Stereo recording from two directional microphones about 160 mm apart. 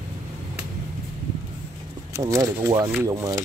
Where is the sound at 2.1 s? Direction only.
20° right (ahead or behind).